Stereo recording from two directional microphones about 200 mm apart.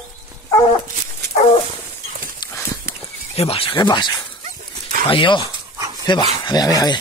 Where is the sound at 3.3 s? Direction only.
30° left (ahead or behind).